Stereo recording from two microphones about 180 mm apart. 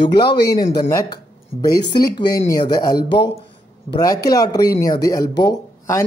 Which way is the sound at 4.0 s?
20° left (ahead or behind).